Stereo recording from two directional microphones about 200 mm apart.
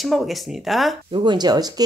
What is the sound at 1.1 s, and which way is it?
Speech, 25° right (ahead or behind).